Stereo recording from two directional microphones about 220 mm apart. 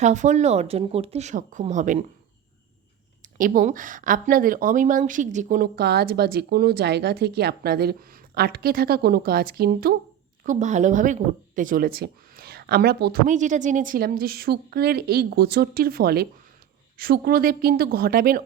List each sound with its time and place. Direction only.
0.0 s speech: 35° right (ahead or behind)
3.3 s speech: 40° right (ahead or behind)